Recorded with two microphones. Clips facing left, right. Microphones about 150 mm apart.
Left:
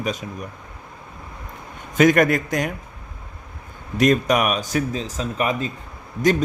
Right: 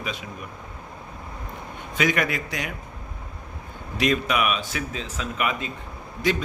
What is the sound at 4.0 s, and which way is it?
Speech, 45° left (ahead or behind).